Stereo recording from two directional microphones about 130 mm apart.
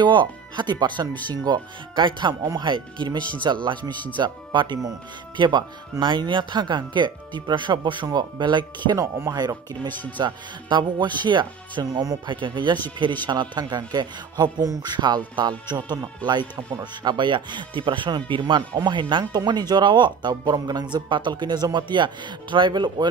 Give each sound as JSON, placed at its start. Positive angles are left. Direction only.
{"t": 0.0, "sound": "speech", "side_deg": -35}